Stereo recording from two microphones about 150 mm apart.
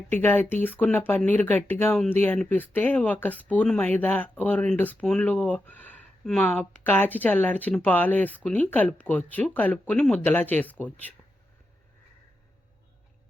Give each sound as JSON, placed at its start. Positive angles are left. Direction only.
{"t": 0.1, "sound": "speech", "side_deg": 15}